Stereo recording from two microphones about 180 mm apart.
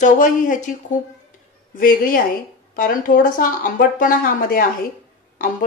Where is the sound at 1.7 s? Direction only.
50° left (ahead or behind).